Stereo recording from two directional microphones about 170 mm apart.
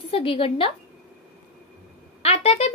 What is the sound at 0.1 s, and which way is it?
Speech, 35° left (ahead or behind).